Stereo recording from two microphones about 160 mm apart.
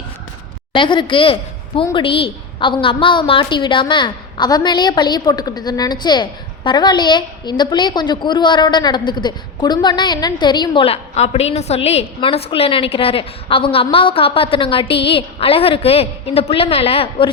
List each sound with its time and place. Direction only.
0.7 s a woman's voice: 30° left (ahead or behind)